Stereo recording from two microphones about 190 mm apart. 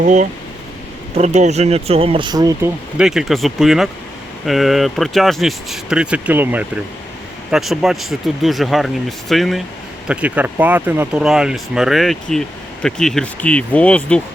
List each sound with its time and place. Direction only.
0.0 s speech: 40° right (ahead or behind); by 2.6 s 20° right (ahead or behind)
3.0 s speech: centre (ahead or behind)